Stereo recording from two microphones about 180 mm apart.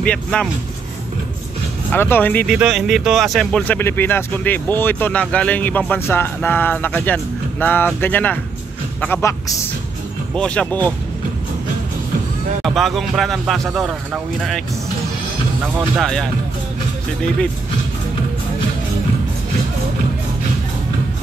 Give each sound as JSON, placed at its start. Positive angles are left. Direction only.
{"t": 0.0, "sound": "speech", "side_deg": 5}
{"t": 1.9, "sound": "speech", "side_deg": 10}
{"t": 2.4, "sound": "speech", "side_deg": 0}
{"t": 12.6, "sound": "speech", "side_deg": 0}
{"t": 16.0, "sound": "speech", "side_deg": 5}